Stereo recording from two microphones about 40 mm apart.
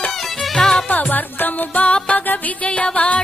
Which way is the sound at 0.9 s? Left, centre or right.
Left.